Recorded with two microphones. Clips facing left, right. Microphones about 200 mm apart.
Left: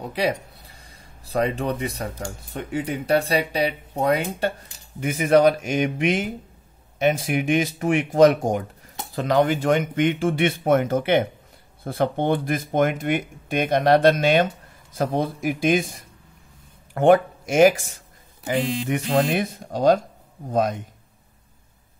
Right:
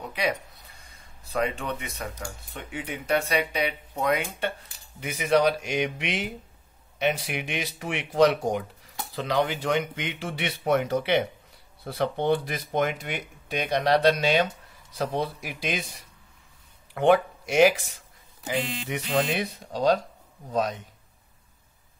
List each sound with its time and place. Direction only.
0.0 s speech: 30° left (ahead or behind); by 20.8 s 50° left (ahead or behind)